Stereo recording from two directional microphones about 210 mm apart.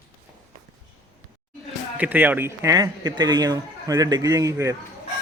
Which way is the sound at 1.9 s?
5° right (ahead or behind).